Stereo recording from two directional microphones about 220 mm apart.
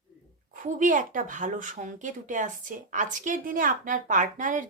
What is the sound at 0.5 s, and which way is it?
Speech, 35° right (ahead or behind).